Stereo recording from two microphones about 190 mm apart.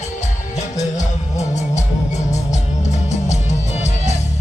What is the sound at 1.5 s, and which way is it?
Music, 35° left (ahead or behind).